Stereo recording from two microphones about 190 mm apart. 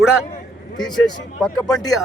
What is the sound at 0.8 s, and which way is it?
Speech, 20° left (ahead or behind).